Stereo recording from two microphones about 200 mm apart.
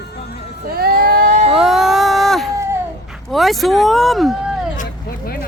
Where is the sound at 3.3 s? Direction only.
Centre (ahead or behind).